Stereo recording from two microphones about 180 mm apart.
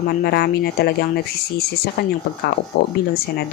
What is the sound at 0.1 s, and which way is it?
Speech, 60° left (ahead or behind).